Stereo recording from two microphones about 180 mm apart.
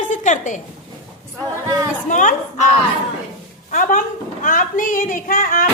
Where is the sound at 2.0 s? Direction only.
45° left (ahead or behind).